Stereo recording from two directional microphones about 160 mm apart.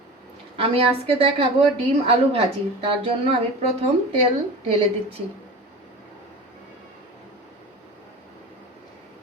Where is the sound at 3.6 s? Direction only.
40° right (ahead or behind).